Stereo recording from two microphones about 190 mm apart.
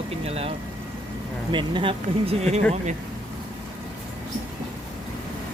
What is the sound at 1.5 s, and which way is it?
Speech, 25° right (ahead or behind).